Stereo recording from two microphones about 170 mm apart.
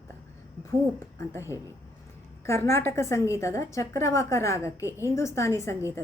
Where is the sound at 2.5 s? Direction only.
15° left (ahead or behind).